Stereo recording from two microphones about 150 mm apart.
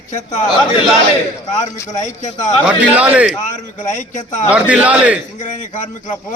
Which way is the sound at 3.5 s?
55° left (ahead or behind).